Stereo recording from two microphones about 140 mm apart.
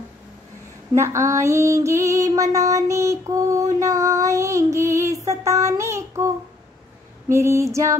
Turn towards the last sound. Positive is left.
turn(degrees=-20)  # may be behind; listen again after turning